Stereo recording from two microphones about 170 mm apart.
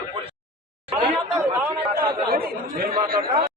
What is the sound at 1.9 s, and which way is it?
Chatter, 65° right (ahead or behind).